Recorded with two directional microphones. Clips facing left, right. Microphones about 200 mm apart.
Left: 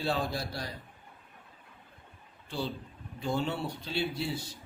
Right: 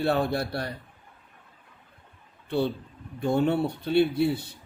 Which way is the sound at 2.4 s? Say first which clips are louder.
Right 9 dB; 60° right (ahead or behind).